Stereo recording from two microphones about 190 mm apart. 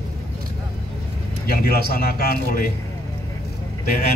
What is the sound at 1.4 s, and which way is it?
A man's voice, 55° left (ahead or behind).